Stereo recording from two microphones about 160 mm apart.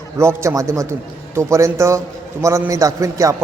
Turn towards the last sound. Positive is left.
turn(degrees=-20)  # may be behind; listen again after turning